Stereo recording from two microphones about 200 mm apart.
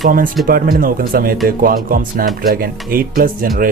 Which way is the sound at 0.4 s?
45° right (ahead or behind).